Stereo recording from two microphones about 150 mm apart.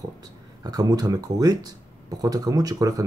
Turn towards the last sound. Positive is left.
turn(degrees=-25)  # may be behind; listen again after turning